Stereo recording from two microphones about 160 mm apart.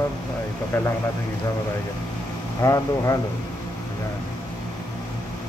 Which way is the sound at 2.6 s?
20° left (ahead or behind).